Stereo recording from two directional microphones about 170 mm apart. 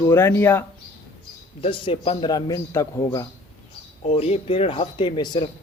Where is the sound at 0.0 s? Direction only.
15° left (ahead or behind).